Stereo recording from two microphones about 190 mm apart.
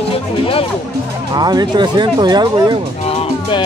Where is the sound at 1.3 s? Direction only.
20° right (ahead or behind).